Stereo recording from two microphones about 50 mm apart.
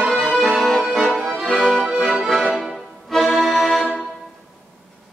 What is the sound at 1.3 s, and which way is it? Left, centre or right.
Accordion, centre.